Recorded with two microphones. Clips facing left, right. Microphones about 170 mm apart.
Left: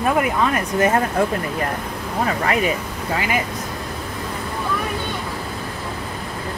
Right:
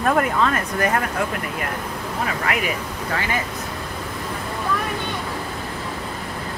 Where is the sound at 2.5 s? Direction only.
25° left (ahead or behind).